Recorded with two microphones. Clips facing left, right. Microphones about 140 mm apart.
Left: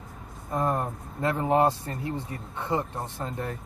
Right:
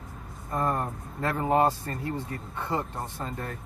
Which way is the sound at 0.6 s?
15° left (ahead or behind).